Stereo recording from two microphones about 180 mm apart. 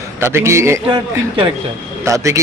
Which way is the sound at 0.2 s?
15° right (ahead or behind).